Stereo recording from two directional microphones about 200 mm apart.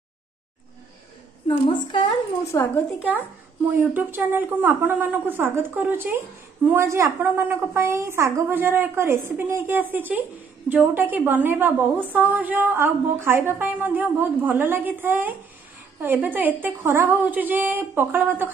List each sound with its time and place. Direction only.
1.5 s a woman's voice: 25° left (ahead or behind)
3.6 s a woman's voice: 10° right (ahead or behind)